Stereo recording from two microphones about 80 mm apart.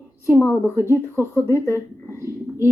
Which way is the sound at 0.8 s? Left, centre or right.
Right.